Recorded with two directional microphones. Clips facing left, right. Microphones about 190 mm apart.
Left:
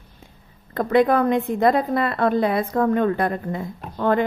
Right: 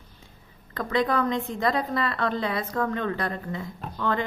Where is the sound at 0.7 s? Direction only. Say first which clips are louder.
Left 8 dB; 55° left (ahead or behind).